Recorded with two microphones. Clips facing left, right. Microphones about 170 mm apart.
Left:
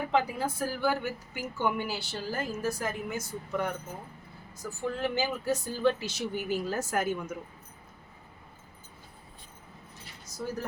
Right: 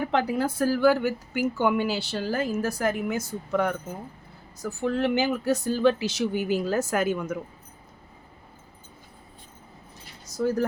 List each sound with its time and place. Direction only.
0.1 s a woman's voice: 75° right (ahead or behind); by 3.8 s 90° right
4.5 s speech: 75° right (ahead or behind); by 7.3 s 90° right
10.2 s keys jangling: 80° right